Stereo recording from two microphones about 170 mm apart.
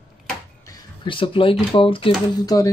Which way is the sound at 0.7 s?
30° left (ahead or behind).